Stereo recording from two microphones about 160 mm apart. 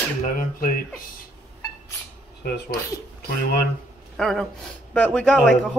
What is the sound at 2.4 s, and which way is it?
Speech, 75° left (ahead or behind).